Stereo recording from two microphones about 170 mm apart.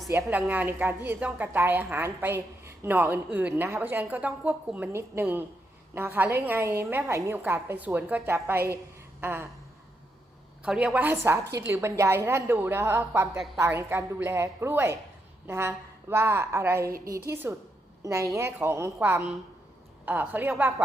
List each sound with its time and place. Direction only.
0.1 s a woman's voice: 10° right (ahead or behind)
10.6 s a woman's voice: 5° right (ahead or behind)
11.4 s a woman's voice: 80° right
11.7 s a woman's voice: 15° right (ahead or behind)